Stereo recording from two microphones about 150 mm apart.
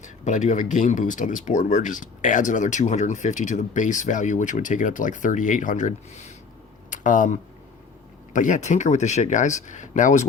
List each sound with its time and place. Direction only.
0.0 s speech: 55° left (ahead or behind)